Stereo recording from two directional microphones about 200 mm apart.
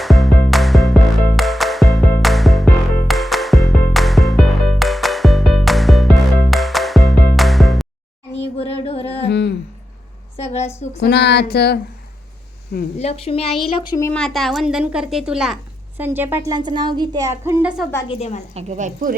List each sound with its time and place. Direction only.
0.0 s music: centre (ahead or behind)
8.3 s music: 30° left (ahead or behind)
9.2 s a sound: 60° left (ahead or behind)
10.3 s a sound: 35° left (ahead or behind)
11.0 s speech: 60° left (ahead or behind)
13.0 s a woman's voice: 30° left (ahead or behind)
14.1 s a woman's voice: 5° left (ahead or behind)
18.1 s a woman's voice: 35° left (ahead or behind)
18.5 s speech: 35° right (ahead or behind)